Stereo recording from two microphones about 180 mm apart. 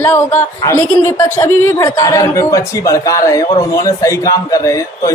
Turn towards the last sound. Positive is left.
turn(degrees=20)  # may be behind; listen again after turning